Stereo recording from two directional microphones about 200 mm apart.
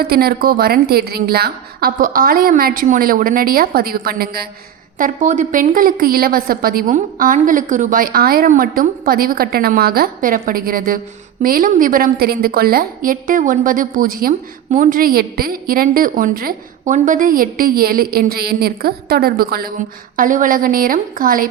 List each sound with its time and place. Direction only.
0.0 s a woman's voice: 50° right (ahead or behind)